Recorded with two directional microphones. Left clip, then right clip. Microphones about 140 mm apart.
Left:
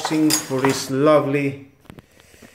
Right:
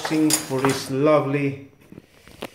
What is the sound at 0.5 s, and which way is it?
Speech, 20° left (ahead or behind).